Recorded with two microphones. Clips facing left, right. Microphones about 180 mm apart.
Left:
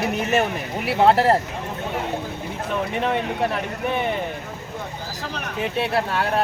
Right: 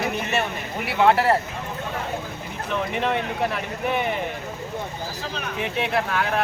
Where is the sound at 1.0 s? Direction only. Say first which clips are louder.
Left 2 dB; 35° left (ahead or behind).